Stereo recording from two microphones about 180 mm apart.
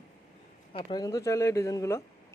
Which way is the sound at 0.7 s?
30° left (ahead or behind).